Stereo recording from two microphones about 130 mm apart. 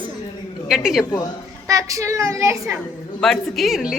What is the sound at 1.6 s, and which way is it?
A woman's voice, 25° right (ahead or behind).